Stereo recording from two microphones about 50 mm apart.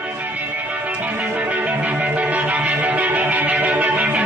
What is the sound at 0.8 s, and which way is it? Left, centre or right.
Music, right.